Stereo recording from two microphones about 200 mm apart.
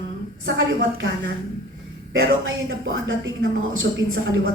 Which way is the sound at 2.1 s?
75° right (ahead or behind).